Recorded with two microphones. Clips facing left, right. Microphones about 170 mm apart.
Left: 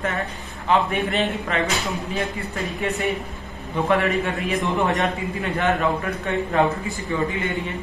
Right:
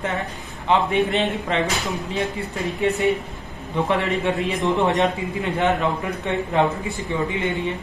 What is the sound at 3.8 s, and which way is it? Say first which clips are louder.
A man's voice: left 2 dB; 20° right (ahead or behind).